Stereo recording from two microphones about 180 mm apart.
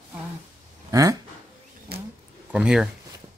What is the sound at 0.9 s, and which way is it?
Speech, 20° right (ahead or behind).